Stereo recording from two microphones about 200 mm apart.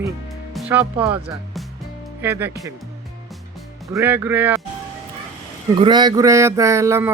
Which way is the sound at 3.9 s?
10° right (ahead or behind).